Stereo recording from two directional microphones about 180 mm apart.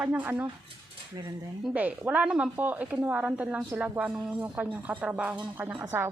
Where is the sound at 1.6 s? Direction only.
10° right (ahead or behind).